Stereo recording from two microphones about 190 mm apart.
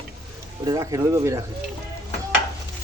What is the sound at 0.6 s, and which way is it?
Speech, 20° right (ahead or behind).